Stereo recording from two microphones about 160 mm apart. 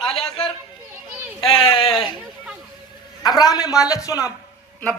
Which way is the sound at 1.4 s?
35° left (ahead or behind).